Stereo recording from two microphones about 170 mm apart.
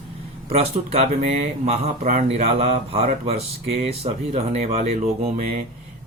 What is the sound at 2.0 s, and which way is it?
Speech, 50° right (ahead or behind).